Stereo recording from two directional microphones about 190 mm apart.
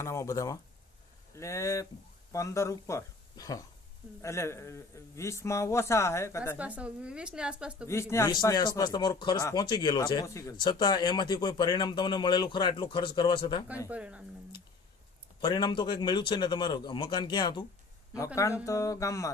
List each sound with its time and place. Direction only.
0.0 s speech: 15° left (ahead or behind)
6.6 s speech: 5° right (ahead or behind)
7.9 s a man's voice: 15° left (ahead or behind)
13.8 s speech: 5° right (ahead or behind)
15.4 s a man's voice: 25° left (ahead or behind)